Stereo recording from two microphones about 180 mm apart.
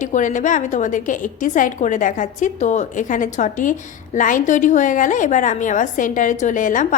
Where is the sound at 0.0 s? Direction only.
45° left (ahead or behind).